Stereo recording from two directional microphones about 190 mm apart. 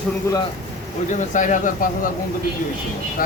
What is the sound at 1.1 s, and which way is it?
Speech, 40° left (ahead or behind).